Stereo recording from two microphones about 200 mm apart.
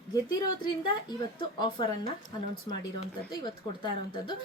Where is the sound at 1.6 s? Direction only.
25° left (ahead or behind).